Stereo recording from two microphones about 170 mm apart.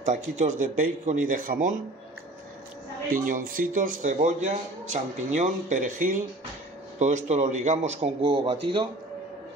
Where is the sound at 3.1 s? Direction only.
55° right (ahead or behind); by 8.6 s 30° right (ahead or behind).